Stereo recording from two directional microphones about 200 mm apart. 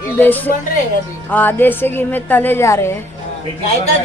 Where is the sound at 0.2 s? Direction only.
10° left (ahead or behind).